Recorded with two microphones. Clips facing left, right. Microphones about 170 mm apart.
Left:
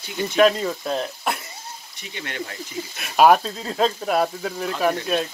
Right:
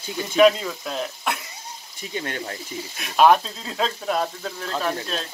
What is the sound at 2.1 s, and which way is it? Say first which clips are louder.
Speech: right 4 dB; 40° right (ahead or behind).